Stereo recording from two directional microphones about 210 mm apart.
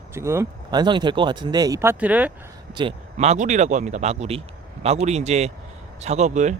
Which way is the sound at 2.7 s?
25° right (ahead or behind).